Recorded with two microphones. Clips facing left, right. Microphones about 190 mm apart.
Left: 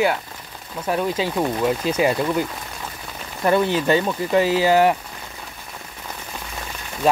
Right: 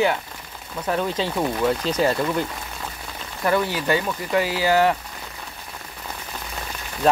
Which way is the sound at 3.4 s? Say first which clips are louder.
Left 4 dB; 20° left (ahead or behind).